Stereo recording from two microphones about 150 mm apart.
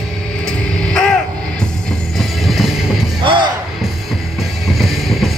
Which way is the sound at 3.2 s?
35° right (ahead or behind).